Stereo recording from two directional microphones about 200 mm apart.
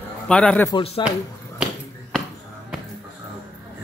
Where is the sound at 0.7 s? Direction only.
25° left (ahead or behind).